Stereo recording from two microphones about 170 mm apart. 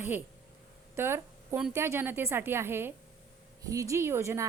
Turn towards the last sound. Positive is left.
turn(degrees=-15)  # may be behind; listen again after turning